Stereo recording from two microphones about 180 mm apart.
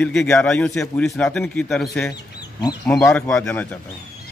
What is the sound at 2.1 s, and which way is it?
Speech, 20° left (ahead or behind).